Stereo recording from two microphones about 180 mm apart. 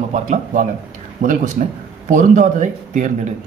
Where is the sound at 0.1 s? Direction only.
45° right (ahead or behind).